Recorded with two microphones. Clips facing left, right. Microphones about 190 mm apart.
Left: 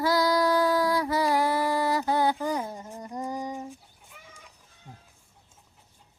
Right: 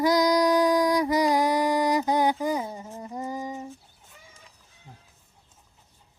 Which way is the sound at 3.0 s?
5° right (ahead or behind).